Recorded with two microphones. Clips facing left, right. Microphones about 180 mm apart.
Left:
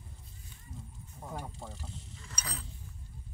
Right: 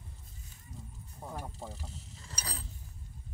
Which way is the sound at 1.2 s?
5° right (ahead or behind).